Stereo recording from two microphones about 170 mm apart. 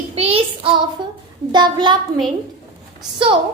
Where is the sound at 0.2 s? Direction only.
35° right (ahead or behind).